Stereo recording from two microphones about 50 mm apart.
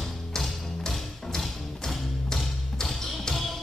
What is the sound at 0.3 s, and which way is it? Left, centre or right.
Music, centre.